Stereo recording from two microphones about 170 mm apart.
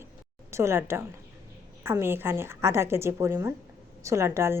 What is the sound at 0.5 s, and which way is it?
A woman's voice, 15° right (ahead or behind).